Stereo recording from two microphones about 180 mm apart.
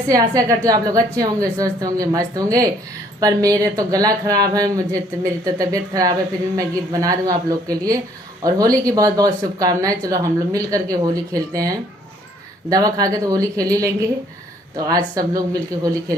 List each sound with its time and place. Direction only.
0.1 s speech: 20° right (ahead or behind)